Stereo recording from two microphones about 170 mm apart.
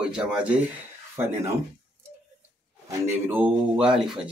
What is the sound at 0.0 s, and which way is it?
Speech, 5° right (ahead or behind).